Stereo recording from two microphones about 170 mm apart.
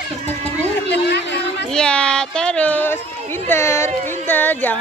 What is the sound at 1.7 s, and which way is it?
Speech, 5° left (ahead or behind).